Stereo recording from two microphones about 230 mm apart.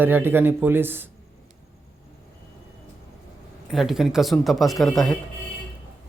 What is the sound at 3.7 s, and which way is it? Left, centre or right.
A man's voice, centre.